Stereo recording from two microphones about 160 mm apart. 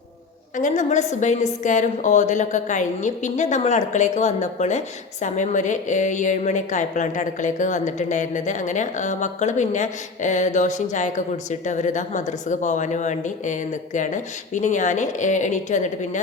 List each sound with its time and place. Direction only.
0.5 s a woman's voice: 50° left (ahead or behind)